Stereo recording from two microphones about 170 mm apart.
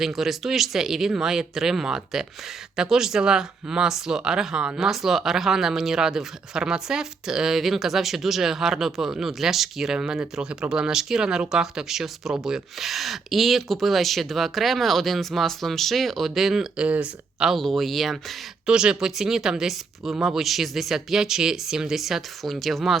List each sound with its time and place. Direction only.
0.0 s speech: centre (ahead or behind)